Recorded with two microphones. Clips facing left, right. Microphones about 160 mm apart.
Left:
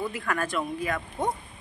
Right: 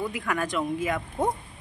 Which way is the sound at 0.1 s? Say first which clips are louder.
Right 1 dB; 15° right (ahead or behind).